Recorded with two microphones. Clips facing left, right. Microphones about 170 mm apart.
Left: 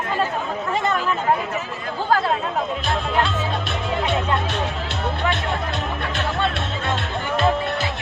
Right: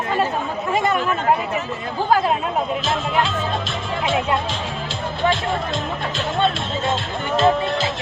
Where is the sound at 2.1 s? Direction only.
15° right (ahead or behind).